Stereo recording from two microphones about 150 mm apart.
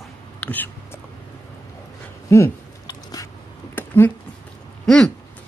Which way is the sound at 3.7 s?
15° left (ahead or behind).